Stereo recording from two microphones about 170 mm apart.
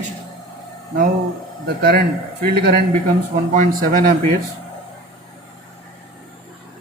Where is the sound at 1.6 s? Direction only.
65° right (ahead or behind).